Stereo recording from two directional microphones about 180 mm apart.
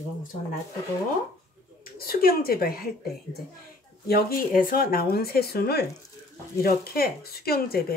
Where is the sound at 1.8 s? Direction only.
55° left (ahead or behind).